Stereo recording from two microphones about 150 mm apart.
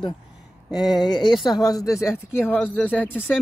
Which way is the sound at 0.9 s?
30° left (ahead or behind).